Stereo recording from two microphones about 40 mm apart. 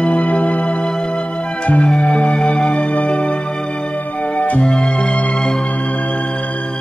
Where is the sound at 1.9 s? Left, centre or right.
Left.